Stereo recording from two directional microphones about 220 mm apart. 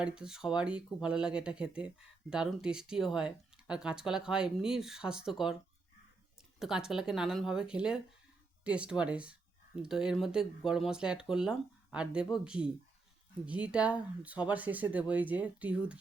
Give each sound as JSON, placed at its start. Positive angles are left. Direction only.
{"t": 0.0, "sound": "speech", "side_deg": -5}
{"t": 6.6, "sound": "speech", "side_deg": -5}